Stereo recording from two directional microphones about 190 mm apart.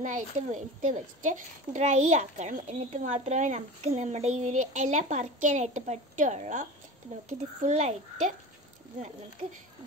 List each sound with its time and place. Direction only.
0.0 s speech: 40° right (ahead or behind)